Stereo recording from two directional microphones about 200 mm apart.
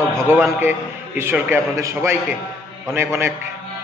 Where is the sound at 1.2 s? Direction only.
10° right (ahead or behind).